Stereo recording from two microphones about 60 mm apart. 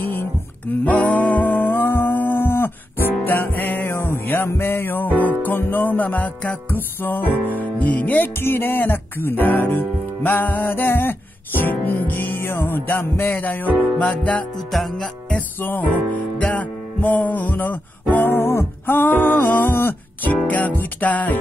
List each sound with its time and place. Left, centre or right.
0.1 s music: left
14.7 s music: centre
15.0 s music: centre